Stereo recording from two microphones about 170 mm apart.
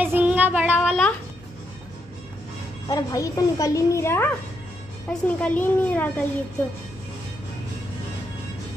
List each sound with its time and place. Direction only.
0.0 s a sound: 10° right (ahead or behind)
2.9 s a woman's voice: 20° left (ahead or behind)
5.1 s a woman's voice: 5° left (ahead or behind)